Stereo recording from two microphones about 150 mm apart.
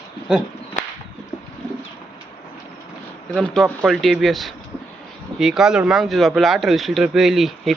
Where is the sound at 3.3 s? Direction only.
Centre (ahead or behind).